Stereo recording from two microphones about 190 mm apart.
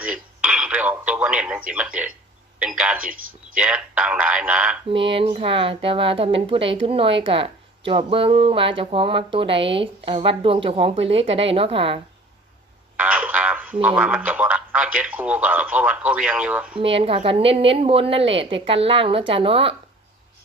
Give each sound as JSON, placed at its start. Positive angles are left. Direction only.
{"t": 0.0, "sound": "telephone", "side_deg": -5}
{"t": 2.6, "sound": "speech", "side_deg": -5}
{"t": 5.1, "sound": "speech", "side_deg": -30}
{"t": 13.0, "sound": "speech", "side_deg": -5}
{"t": 16.8, "sound": "speech", "side_deg": -30}